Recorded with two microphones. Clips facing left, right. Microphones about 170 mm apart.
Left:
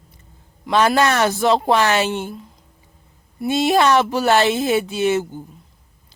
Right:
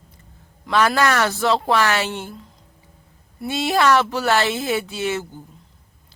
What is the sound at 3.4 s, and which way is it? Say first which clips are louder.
Speech: left 3 dB; 20° left (ahead or behind).